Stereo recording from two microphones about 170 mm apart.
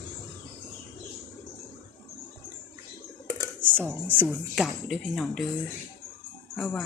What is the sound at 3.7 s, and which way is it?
Speech, 10° right (ahead or behind).